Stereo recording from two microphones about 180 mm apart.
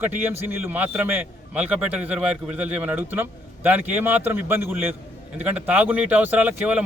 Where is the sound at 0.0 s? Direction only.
10° right (ahead or behind).